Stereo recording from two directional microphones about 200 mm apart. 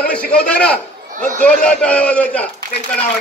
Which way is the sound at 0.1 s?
5° left (ahead or behind).